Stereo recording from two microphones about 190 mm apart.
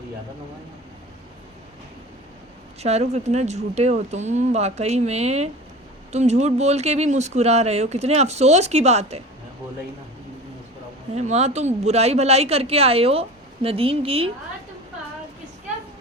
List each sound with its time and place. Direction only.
2.8 s speech: 35° right (ahead or behind)
11.1 s speech: 35° right (ahead or behind)